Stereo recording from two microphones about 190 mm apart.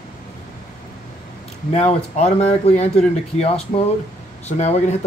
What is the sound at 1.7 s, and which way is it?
Speech, 35° left (ahead or behind).